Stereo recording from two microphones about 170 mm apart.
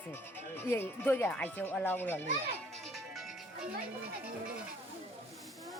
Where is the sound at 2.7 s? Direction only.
Centre (ahead or behind).